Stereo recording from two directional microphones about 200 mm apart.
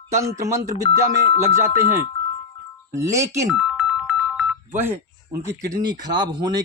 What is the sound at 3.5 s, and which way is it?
Music, 5° right (ahead or behind).